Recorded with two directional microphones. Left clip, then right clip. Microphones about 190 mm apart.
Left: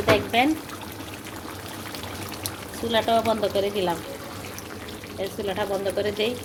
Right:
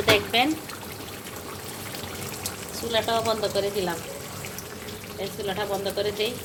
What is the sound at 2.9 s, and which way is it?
Speech, 30° left (ahead or behind).